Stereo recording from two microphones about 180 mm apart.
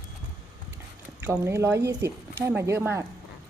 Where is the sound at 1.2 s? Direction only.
15° right (ahead or behind).